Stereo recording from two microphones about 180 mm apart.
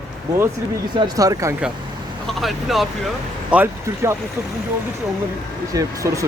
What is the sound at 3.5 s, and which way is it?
Speech, 10° right (ahead or behind).